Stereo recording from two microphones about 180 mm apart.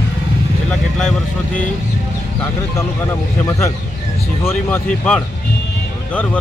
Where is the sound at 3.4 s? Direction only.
15° left (ahead or behind).